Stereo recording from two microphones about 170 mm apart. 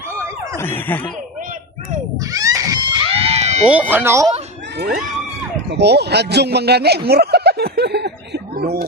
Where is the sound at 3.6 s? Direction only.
10° right (ahead or behind).